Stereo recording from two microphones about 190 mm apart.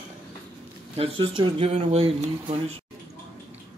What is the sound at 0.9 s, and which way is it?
Speech, 30° right (ahead or behind).